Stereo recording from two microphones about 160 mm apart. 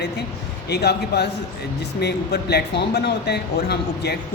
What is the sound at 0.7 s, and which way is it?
Speech, 90° left.